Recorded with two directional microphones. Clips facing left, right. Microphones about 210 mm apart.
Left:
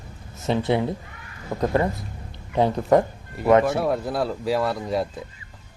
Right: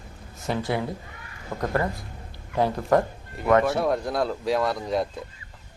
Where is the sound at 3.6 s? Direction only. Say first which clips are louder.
Left 1 dB; centre (ahead or behind).